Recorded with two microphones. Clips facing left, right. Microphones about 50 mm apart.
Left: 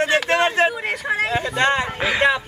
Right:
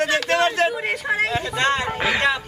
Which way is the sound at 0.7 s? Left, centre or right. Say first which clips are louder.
Even; centre.